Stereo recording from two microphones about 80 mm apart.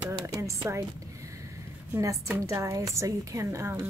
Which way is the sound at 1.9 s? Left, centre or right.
Right.